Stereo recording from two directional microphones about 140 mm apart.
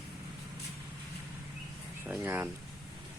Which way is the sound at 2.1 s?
15° right (ahead or behind).